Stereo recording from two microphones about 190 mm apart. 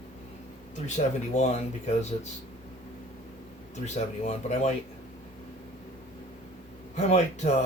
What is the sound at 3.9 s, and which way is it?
Speech, 35° left (ahead or behind).